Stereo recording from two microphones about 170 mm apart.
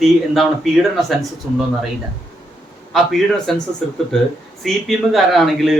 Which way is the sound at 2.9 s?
Centre (ahead or behind).